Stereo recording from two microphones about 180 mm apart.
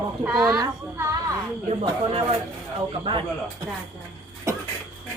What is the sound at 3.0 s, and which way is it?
Speech, 25° right (ahead or behind).